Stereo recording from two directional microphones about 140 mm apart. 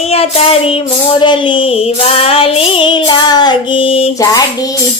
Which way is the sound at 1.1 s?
35° left (ahead or behind).